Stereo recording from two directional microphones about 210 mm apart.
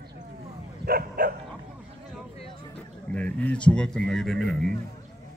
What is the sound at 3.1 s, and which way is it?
A man's voice, 5° left (ahead or behind).